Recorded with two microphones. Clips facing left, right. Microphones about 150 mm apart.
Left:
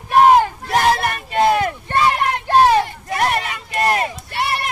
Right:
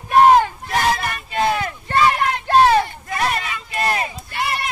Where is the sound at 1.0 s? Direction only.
55° left (ahead or behind).